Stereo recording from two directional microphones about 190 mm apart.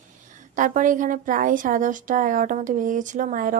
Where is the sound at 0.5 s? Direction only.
45° right (ahead or behind).